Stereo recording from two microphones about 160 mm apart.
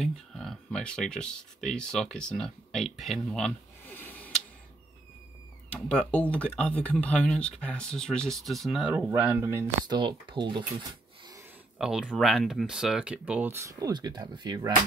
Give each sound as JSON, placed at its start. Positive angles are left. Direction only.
{"t": 0.0, "sound": "speech", "side_deg": 0}
{"t": 5.7, "sound": "speech", "side_deg": 5}
{"t": 9.1, "sound": "speech", "side_deg": -15}
{"t": 9.8, "sound": "speech", "side_deg": -30}
{"t": 11.8, "sound": "speech", "side_deg": -5}